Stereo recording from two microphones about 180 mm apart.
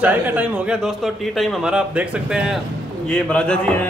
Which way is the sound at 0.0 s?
10° right (ahead or behind).